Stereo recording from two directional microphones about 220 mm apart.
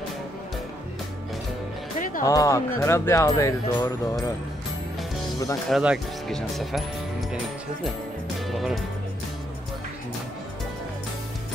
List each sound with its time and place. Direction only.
2.0 s music: 35° left (ahead or behind)
2.2 s speech: 15° left (ahead or behind)
5.7 s speech: centre (ahead or behind)
8.5 s speech: centre (ahead or behind)